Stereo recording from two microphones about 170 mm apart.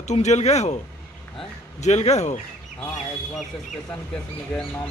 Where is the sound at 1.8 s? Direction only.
40° left (ahead or behind).